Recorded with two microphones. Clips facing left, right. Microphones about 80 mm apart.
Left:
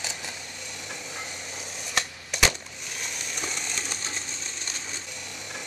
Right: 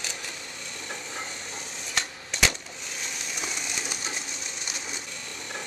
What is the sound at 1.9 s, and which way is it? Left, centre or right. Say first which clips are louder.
Typewriter: left 2 dB; centre.